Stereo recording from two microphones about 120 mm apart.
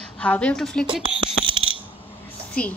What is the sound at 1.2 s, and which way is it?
Fire alarm, 50° right (ahead or behind).